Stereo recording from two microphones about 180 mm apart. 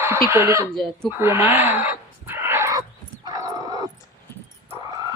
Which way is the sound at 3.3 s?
20° right (ahead or behind).